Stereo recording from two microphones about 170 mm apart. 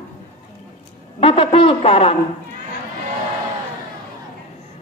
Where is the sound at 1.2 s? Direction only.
30° left (ahead or behind).